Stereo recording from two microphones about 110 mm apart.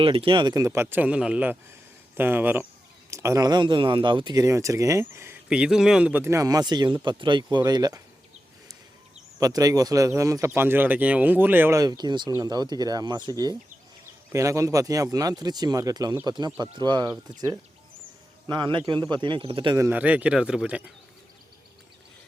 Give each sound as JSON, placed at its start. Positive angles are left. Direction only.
{"t": 0.0, "sound": "speech", "side_deg": -55}
{"t": 0.5, "sound": "speech", "side_deg": -25}
{"t": 5.5, "sound": "speech", "side_deg": -10}
{"t": 6.2, "sound": "speech", "side_deg": -30}
{"t": 9.4, "sound": "speech", "side_deg": -35}
{"t": 11.8, "sound": "speech", "side_deg": -40}
{"t": 18.4, "sound": "speech", "side_deg": -45}
{"t": 19.9, "sound": "speech", "side_deg": -15}